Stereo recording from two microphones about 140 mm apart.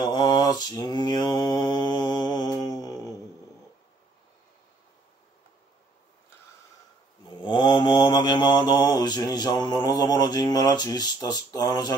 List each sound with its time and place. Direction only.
0.0 s mantra: 30° left (ahead or behind)
7.2 s mantra: 35° left (ahead or behind)